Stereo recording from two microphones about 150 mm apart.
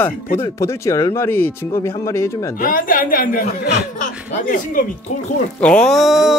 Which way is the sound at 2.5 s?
65° left (ahead or behind).